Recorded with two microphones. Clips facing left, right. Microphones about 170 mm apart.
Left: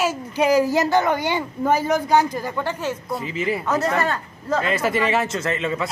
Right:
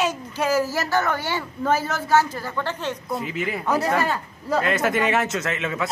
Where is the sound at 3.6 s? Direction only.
10° right (ahead or behind).